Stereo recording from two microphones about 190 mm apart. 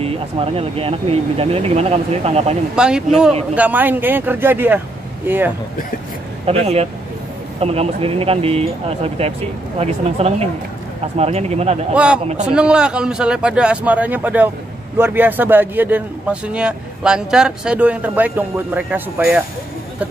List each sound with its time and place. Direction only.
0.0 s speech: 30° right (ahead or behind)
2.7 s a man's voice: 5° right (ahead or behind)
6.4 s speech: 35° right (ahead or behind)
11.9 s a man's voice: 5° right (ahead or behind)